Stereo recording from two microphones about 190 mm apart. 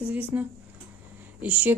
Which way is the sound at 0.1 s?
10° right (ahead or behind).